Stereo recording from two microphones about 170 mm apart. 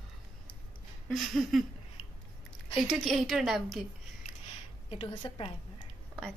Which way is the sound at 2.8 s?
Centre (ahead or behind).